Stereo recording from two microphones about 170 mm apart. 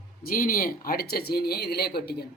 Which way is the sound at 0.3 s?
55° left (ahead or behind).